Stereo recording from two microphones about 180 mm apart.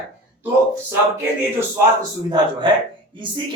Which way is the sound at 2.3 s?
25° right (ahead or behind).